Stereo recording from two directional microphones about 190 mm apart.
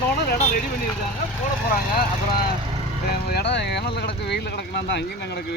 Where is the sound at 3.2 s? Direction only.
60° left (ahead or behind).